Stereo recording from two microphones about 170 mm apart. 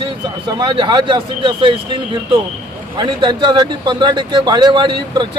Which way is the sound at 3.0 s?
25° right (ahead or behind).